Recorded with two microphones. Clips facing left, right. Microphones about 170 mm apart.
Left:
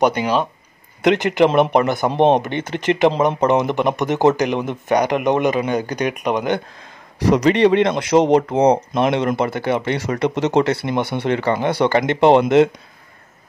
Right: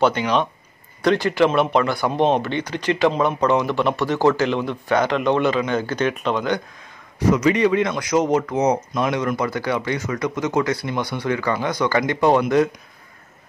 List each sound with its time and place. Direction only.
0.0 s speech: 10° left (ahead or behind)
7.2 s speech: 35° left (ahead or behind)